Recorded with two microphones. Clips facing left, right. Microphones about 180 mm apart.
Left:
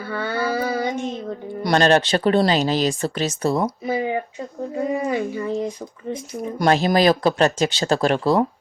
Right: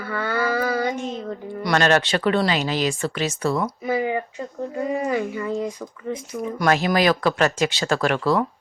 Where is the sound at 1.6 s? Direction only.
35° left (ahead or behind).